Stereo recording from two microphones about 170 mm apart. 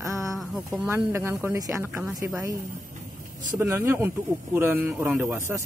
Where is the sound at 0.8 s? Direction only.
15° right (ahead or behind).